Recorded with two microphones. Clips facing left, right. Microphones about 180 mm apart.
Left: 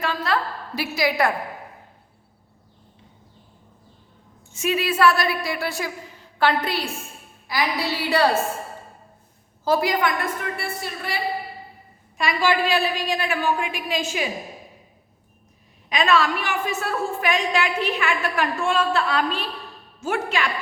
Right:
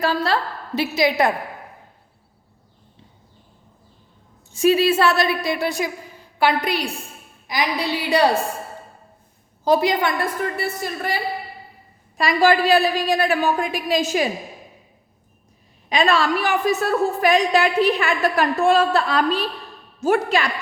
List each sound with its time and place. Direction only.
0.0 s a woman's voice: 35° right (ahead or behind)
0.8 s a woman's voice: 20° right (ahead or behind)
4.5 s a woman's voice: 35° right (ahead or behind); by 8.4 s 15° right (ahead or behind)
9.6 s a woman's voice: 20° right (ahead or behind)
10.6 s a woman's voice: 40° right (ahead or behind)
15.9 s a woman's voice: 30° right (ahead or behind)